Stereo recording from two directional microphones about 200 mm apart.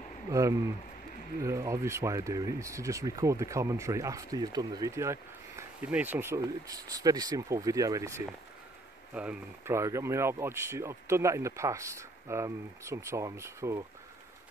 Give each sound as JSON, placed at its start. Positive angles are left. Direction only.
{"t": 0.3, "sound": "speech", "side_deg": -15}